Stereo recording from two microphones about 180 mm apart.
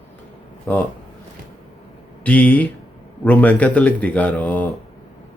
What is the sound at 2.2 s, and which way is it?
Speech, 10° left (ahead or behind).